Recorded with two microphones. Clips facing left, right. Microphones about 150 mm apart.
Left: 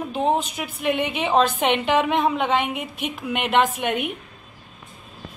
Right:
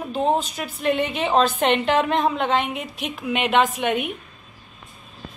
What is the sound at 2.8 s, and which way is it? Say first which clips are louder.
Speech: left 1 dB; 60° left (ahead or behind).